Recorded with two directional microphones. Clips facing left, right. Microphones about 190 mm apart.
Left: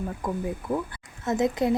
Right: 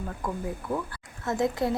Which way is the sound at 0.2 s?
20° left (ahead or behind).